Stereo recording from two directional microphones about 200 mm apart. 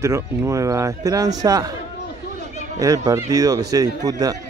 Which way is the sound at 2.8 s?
15° right (ahead or behind).